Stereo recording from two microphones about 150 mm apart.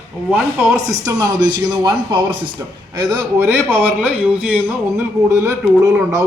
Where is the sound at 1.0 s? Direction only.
25° right (ahead or behind).